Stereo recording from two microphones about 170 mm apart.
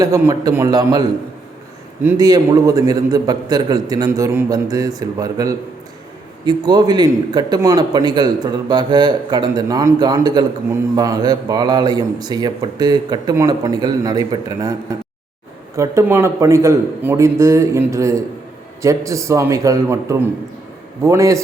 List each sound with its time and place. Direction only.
0.0 s a man's voice: 20° right (ahead or behind)
2.1 s a man's voice: 25° right (ahead or behind)